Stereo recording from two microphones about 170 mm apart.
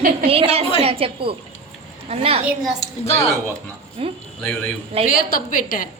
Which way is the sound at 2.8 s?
35° left (ahead or behind).